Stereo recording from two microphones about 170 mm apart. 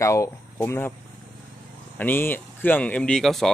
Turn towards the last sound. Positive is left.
turn(degrees=0)  # may be behind; listen again after turning